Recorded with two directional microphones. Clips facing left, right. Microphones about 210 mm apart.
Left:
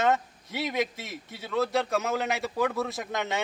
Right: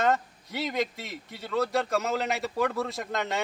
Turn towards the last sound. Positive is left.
turn(degrees=0)  # may be behind; listen again after turning